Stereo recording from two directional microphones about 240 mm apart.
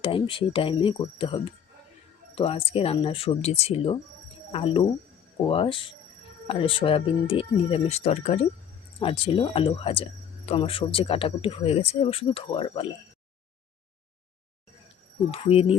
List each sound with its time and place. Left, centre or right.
0.0 s speech: left
15.3 s speech: left